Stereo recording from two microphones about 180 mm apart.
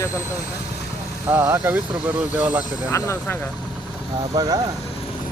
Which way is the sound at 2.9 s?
15° left (ahead or behind).